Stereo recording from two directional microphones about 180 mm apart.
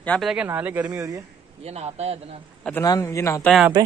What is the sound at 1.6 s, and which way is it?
Speech, 35° right (ahead or behind).